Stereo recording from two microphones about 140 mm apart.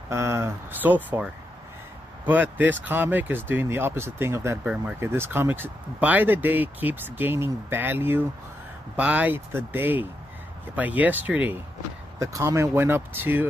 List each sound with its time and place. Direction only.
0.1 s speech: 20° right (ahead or behind)
12.2 s speech: 20° right (ahead or behind)